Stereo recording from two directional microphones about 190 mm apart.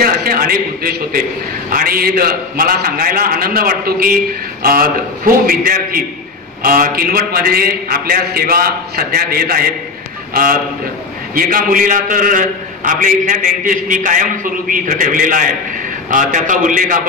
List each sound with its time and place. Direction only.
0.0 s a man's voice: 50° right (ahead or behind)